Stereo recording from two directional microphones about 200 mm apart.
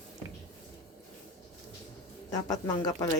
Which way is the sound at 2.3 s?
20° left (ahead or behind).